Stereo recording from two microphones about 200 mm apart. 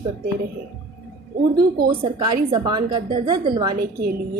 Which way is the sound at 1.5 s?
50° right (ahead or behind).